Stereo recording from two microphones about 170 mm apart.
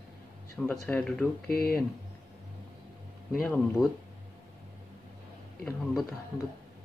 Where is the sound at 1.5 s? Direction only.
65° left (ahead or behind).